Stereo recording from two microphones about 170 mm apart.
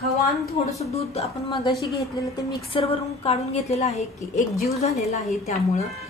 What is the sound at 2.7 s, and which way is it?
A woman's voice, 35° left (ahead or behind).